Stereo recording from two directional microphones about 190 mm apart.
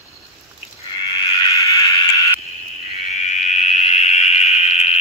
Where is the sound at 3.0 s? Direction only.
40° left (ahead or behind).